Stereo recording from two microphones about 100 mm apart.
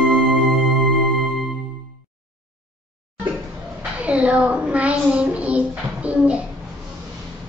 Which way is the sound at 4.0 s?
15° right (ahead or behind).